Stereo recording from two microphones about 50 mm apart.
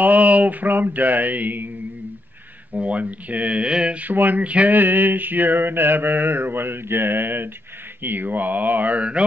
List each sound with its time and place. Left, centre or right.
0.0 s music: right
2.7 s speech: right
4.0 s music: right
4.7 s mantra: right
8.0 s music: right